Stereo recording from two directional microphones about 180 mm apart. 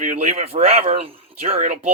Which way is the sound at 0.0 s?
45° right (ahead or behind).